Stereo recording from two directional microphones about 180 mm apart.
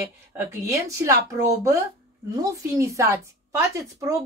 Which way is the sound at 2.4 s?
15° right (ahead or behind).